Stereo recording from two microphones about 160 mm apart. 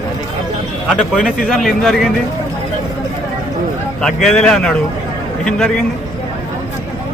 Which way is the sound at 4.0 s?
5° left (ahead or behind).